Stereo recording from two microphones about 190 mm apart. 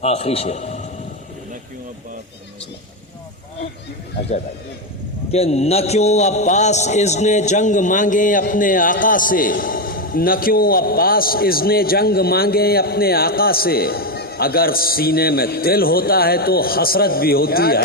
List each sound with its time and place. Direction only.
0.0 s a man's voice: 30° left (ahead or behind)
5.3 s a man's voice: 35° left (ahead or behind); by 17.8 s 55° left (ahead or behind)